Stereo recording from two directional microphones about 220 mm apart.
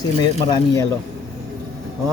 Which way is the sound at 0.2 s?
20° left (ahead or behind).